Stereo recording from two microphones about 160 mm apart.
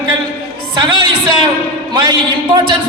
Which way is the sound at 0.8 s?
30° right (ahead or behind).